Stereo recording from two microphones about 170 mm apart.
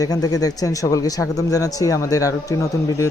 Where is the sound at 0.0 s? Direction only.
20° left (ahead or behind).